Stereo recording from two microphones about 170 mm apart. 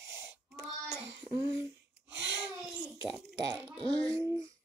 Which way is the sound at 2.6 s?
5° right (ahead or behind).